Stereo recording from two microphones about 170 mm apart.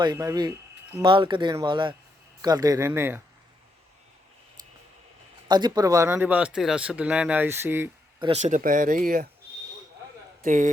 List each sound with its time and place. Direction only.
0.0 s speech: 20° right (ahead or behind)
5.5 s speech: 25° right (ahead or behind)
8.2 s speech: 40° right (ahead or behind); by 9.2 s 55° right (ahead or behind)
10.4 s speech: 50° right (ahead or behind)